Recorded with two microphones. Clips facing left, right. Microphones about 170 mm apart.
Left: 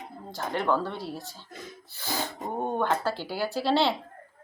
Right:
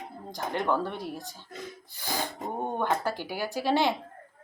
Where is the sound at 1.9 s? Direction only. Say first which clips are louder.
Left 1 dB; 15° right (ahead or behind).